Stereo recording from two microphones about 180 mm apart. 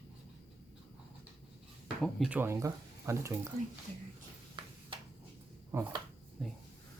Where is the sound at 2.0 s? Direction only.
5° right (ahead or behind).